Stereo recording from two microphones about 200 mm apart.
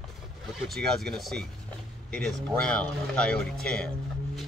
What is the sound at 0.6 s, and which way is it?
Speech, centre (ahead or behind).